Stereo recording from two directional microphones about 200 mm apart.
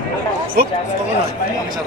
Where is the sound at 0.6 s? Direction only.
45° right (ahead or behind).